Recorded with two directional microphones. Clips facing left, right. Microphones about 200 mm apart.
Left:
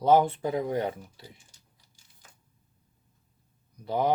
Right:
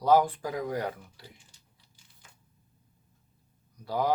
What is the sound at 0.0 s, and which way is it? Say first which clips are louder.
Speech: left 2 dB; 25° left (ahead or behind).